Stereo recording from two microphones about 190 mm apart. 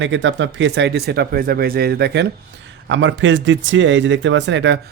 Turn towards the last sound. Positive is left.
turn(degrees=-70)  # may be behind; listen again after turning